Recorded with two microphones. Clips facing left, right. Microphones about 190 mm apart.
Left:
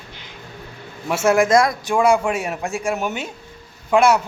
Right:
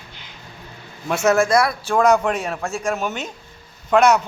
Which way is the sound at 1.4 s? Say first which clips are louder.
Left 2 dB; 20° left (ahead or behind).